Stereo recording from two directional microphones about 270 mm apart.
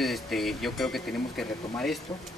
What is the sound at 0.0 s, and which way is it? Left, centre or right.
Speech, centre.